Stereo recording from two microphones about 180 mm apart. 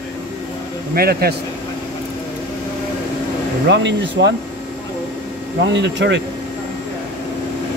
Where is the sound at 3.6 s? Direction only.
75° right (ahead or behind).